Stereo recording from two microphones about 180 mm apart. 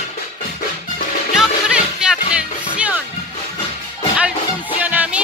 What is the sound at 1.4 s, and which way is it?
Music, 5° right (ahead or behind).